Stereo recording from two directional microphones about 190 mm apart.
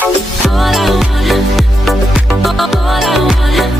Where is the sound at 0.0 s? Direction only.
Centre (ahead or behind).